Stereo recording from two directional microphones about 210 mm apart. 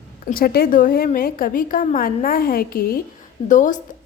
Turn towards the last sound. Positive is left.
turn(degrees=35)  # may be behind; listen again after turning